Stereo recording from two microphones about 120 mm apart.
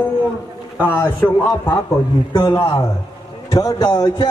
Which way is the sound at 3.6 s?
30° left (ahead or behind).